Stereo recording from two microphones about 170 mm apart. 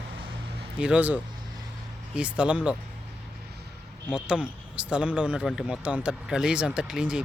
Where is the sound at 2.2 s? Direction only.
5° right (ahead or behind).